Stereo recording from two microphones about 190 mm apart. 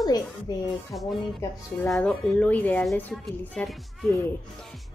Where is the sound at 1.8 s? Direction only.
5° left (ahead or behind).